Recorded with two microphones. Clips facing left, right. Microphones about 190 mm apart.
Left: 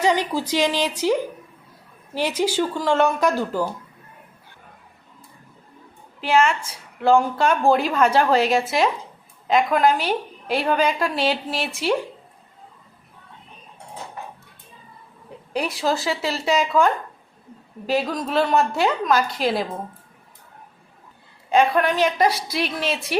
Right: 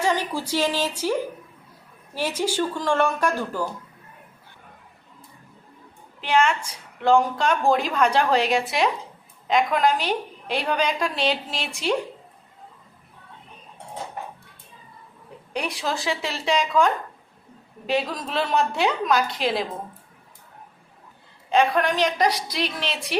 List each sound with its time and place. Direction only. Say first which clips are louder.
0.2 s speech: left 3 dB; 10° right (ahead or behind)
2.1 s speech: left 3 dB; 10° right (ahead or behind)
2.4 s a woman's voice: left 3 dB; 10° left (ahead or behind)
6.1 s a woman's voice: left 2 dB; 5° left (ahead or behind)
15.5 s a woman's voice: left 4 dB; centre (ahead or behind)
21.5 s a woman's voice: left 2 dB; 5° left (ahead or behind)